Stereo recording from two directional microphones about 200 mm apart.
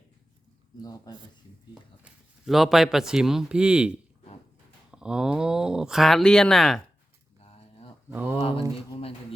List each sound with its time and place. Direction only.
0.8 s speech: 20° left (ahead or behind)
2.5 s speech: centre (ahead or behind)
8.1 s speech: 10° right (ahead or behind)
8.4 s speech: 30° left (ahead or behind)